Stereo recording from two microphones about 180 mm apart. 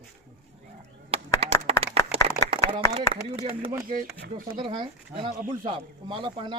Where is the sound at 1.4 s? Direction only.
35° right (ahead or behind).